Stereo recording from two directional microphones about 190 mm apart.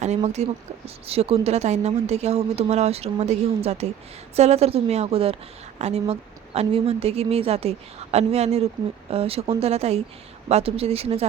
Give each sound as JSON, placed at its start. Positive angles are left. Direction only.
{"t": 0.0, "sound": "speech", "side_deg": -35}